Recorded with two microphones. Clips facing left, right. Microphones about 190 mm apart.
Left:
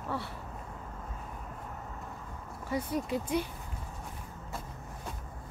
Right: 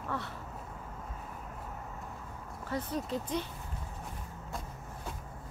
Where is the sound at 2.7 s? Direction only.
10° left (ahead or behind).